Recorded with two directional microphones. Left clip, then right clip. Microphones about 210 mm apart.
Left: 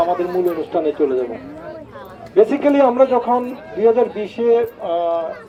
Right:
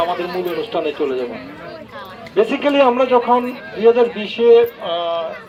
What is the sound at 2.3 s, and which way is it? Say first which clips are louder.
A man's voice: left 1 dB; 50° left (ahead or behind).